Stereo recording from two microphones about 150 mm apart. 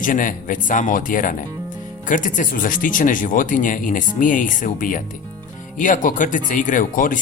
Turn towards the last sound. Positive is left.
turn(degrees=65)  # may be behind; listen again after turning